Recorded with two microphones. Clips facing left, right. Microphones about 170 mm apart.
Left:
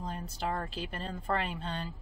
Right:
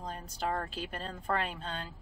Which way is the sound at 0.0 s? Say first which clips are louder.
Even; 5° left (ahead or behind).